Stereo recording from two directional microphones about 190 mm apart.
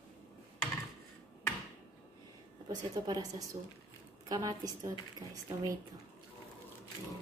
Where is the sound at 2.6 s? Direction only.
20° right (ahead or behind).